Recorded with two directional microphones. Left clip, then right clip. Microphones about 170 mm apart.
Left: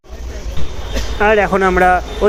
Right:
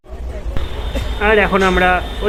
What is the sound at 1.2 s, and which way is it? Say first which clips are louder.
Speech: left 1 dB; 25° left (ahead or behind).